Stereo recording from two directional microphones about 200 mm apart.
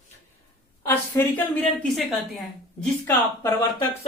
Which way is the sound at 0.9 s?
10° left (ahead or behind).